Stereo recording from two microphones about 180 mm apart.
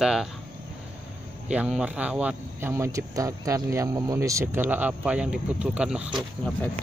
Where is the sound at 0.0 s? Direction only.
5° right (ahead or behind).